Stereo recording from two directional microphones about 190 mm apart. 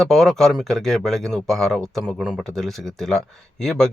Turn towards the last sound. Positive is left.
turn(degrees=5)  # may be behind; listen again after turning